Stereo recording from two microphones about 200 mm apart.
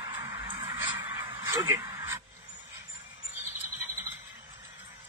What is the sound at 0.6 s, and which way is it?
Music, 25° right (ahead or behind).